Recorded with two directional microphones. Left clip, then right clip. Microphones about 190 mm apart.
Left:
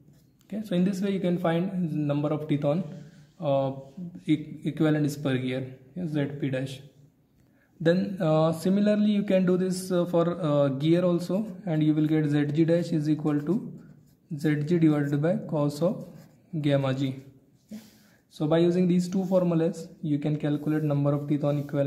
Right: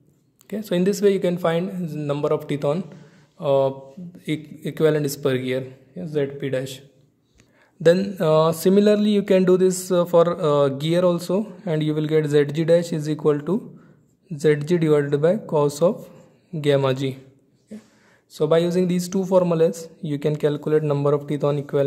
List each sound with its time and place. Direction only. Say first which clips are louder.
0.5 s mantra: right 8 dB; 30° right (ahead or behind)
4.2 s a man's voice: even; 30° right (ahead or behind)
7.8 s mantra: right 8 dB; 35° right (ahead or behind)
16.6 s a man's voice: right 7 dB; 30° right (ahead or behind)
18.3 s mantra: right 5 dB; 35° right (ahead or behind)